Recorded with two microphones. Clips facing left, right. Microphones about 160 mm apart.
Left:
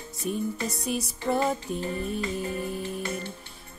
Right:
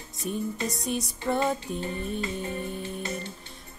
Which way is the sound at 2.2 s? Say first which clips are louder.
Left 2 dB; 30° right (ahead or behind).